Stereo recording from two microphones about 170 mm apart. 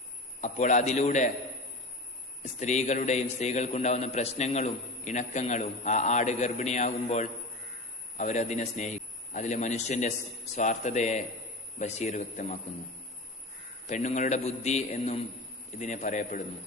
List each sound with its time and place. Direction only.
0.4 s a man's voice: 45° left (ahead or behind)
2.6 s a man's voice: 45° left (ahead or behind)
13.8 s a man's voice: 45° left (ahead or behind)